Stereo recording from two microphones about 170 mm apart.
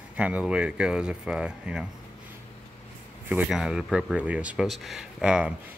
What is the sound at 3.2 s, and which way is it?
Speech, 5° right (ahead or behind).